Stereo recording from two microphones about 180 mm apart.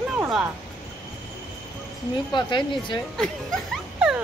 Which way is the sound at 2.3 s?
25° left (ahead or behind).